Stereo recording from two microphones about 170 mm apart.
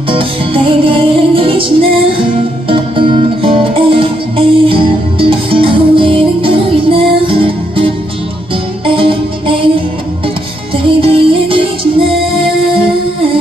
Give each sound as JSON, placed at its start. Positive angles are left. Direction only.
{"t": 0.1, "sound": "music", "side_deg": -30}
{"t": 11.0, "sound": "music", "side_deg": -30}